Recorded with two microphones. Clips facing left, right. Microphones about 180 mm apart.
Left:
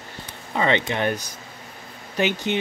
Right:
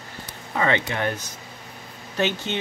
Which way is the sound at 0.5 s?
20° left (ahead or behind).